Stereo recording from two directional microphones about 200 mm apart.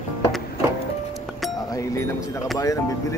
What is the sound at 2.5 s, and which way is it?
Speech, 15° left (ahead or behind).